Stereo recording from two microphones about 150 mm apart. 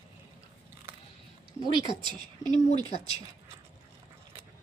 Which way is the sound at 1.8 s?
30° right (ahead or behind).